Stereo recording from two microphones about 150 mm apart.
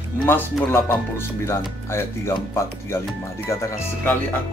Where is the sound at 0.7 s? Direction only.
15° left (ahead or behind).